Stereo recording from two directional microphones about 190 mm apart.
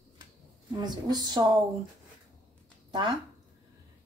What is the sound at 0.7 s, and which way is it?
Speech, 20° right (ahead or behind).